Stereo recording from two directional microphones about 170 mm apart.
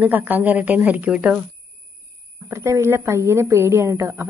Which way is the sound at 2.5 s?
15° right (ahead or behind).